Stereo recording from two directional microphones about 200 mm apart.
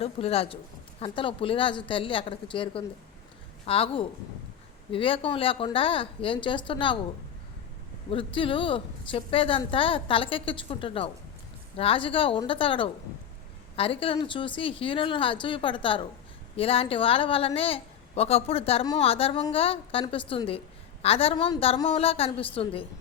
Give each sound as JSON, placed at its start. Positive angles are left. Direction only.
{"t": 0.0, "sound": "a woman's voice", "side_deg": 30}
{"t": 8.1, "sound": "a woman's voice", "side_deg": 25}